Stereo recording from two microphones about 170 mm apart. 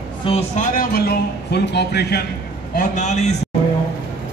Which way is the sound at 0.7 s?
65° left (ahead or behind).